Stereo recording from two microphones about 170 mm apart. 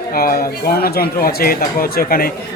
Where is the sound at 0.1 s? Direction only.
60° left (ahead or behind).